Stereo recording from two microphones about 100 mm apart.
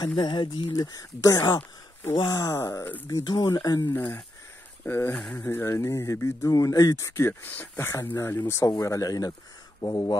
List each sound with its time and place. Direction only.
0.0 s speech: 45° left (ahead or behind)
0.7 s speech: 35° left (ahead or behind)
3.3 s speech: 40° left (ahead or behind)
3.9 s speech: 20° left (ahead or behind); by 10.1 s 40° left (ahead or behind)